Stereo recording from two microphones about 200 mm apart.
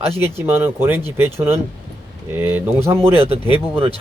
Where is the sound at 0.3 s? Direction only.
10° right (ahead or behind).